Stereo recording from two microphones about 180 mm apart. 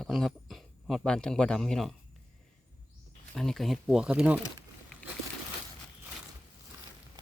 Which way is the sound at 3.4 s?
Centre (ahead or behind).